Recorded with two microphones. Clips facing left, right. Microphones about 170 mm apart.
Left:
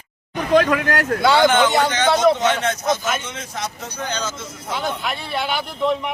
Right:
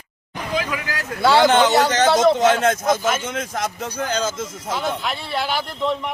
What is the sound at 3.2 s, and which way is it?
Speech, 50° right (ahead or behind).